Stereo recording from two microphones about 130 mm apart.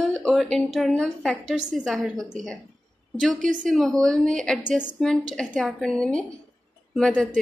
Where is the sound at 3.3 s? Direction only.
80° right.